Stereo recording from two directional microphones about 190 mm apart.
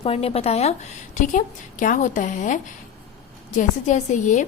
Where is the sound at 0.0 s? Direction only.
30° left (ahead or behind).